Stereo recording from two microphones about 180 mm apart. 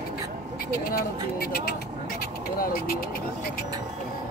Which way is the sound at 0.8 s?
60° left (ahead or behind).